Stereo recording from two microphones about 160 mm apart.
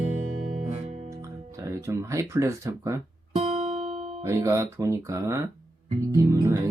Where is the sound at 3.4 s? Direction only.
40° right (ahead or behind).